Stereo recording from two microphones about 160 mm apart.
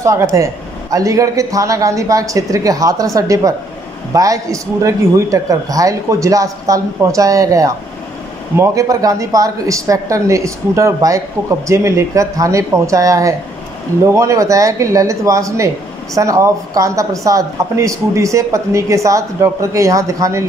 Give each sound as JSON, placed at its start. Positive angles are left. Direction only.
{"t": 0.0, "sound": "speech", "side_deg": -20}